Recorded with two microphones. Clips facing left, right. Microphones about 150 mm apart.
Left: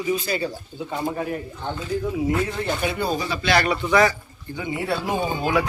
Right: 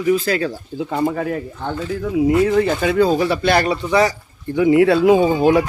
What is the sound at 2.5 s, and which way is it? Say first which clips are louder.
Speech: right 9 dB; 90° right.